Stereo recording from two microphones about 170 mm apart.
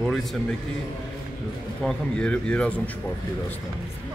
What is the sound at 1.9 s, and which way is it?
Speech, 5° left (ahead or behind).